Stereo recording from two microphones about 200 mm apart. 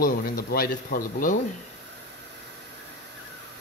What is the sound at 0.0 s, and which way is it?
Speech, 50° left (ahead or behind).